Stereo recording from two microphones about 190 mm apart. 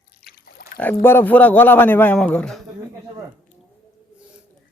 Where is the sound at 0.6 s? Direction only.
50° left (ahead or behind).